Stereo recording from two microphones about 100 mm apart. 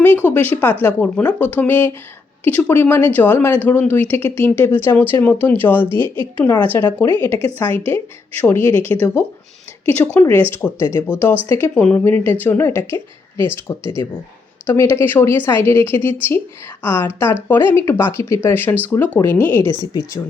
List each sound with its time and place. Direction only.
0.0 s speech: 20° left (ahead or behind)
19.7 s a woman's voice: 40° left (ahead or behind)